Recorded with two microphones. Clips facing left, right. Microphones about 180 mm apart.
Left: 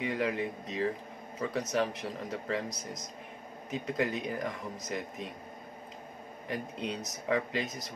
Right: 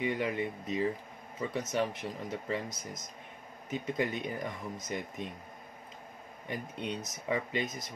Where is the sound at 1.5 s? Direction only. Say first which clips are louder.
Left 1 dB; centre (ahead or behind).